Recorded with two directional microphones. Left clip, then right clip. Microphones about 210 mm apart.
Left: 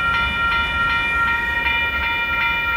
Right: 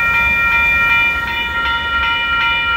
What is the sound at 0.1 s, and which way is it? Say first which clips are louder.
Train: right 6 dB; 25° left (ahead or behind).